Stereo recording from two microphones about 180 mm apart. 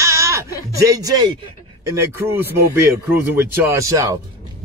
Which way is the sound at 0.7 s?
20° right (ahead or behind).